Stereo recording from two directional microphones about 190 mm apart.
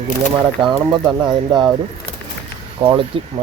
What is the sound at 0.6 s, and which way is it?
Speech, 25° right (ahead or behind).